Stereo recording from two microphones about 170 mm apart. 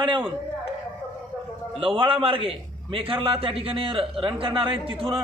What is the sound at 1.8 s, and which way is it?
A man's voice, 30° right (ahead or behind).